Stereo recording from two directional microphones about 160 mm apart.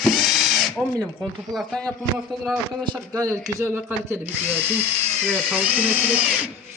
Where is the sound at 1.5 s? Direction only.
5° left (ahead or behind).